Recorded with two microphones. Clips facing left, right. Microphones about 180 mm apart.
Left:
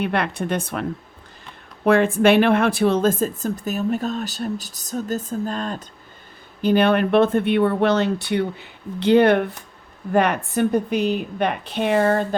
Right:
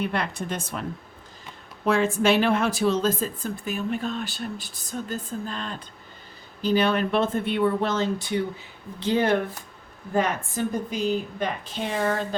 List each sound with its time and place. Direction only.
0.0 s speech: 65° left (ahead or behind); by 5.8 s 45° left (ahead or behind)
6.6 s speech: 55° left (ahead or behind)